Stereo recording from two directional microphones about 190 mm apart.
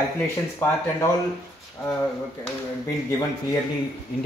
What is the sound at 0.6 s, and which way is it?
Speech, 10° left (ahead or behind).